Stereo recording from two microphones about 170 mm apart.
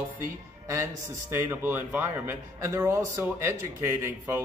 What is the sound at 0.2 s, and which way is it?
A man's voice, 15° right (ahead or behind).